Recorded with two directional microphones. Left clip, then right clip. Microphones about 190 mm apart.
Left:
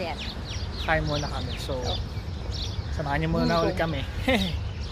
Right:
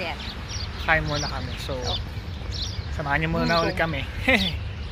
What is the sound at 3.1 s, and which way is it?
Speech, 10° right (ahead or behind).